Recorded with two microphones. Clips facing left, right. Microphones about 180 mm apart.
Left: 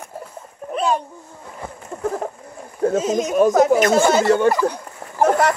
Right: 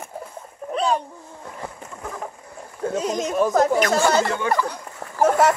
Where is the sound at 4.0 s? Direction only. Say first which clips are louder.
Left 3 dB; 20° left (ahead or behind).